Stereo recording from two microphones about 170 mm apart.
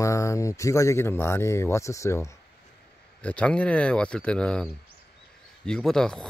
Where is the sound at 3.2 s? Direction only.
5° left (ahead or behind).